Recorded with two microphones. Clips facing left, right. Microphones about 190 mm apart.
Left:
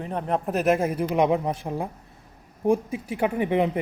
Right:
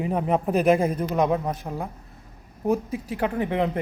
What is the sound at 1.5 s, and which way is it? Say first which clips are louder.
Speech: left 2 dB; 25° left (ahead or behind).